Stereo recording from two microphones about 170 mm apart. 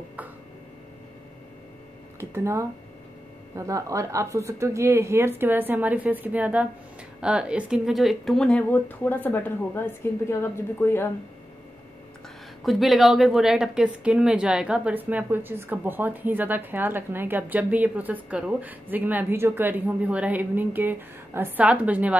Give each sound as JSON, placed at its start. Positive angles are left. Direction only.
{"t": 2.1, "sound": "a woman's voice", "side_deg": -15}
{"t": 12.6, "sound": "a woman's voice", "side_deg": 0}